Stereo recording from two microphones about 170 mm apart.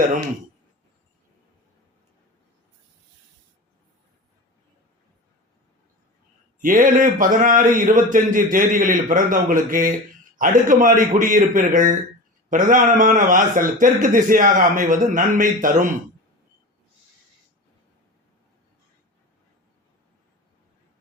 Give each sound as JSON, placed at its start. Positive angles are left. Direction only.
{"t": 6.6, "sound": "a man's voice", "side_deg": -50}